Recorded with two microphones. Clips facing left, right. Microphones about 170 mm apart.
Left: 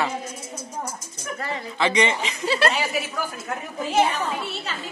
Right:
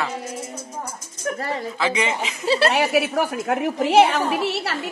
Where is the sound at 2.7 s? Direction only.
65° right (ahead or behind).